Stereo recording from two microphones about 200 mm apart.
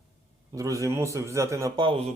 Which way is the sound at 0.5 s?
15° right (ahead or behind).